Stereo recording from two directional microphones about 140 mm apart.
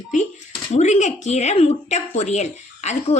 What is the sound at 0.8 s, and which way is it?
Speech, 55° left (ahead or behind).